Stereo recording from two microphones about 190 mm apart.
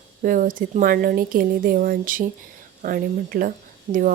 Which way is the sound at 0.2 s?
45° right (ahead or behind).